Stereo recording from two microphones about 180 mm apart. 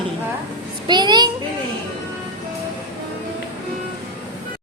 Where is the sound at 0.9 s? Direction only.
25° right (ahead or behind).